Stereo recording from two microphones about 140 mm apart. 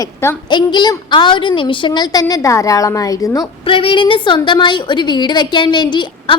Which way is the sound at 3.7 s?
40° left (ahead or behind).